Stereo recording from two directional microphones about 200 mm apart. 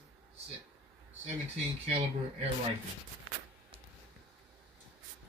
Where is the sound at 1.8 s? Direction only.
35° right (ahead or behind).